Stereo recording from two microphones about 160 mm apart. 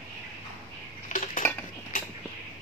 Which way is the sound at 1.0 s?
55° left (ahead or behind).